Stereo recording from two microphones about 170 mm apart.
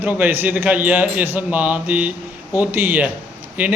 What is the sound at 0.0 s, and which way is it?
Speech, 10° right (ahead or behind).